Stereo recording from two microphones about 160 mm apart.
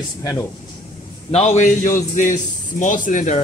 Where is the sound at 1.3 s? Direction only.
40° left (ahead or behind).